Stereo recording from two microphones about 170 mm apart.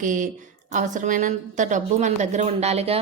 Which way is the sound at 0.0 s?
50° right (ahead or behind).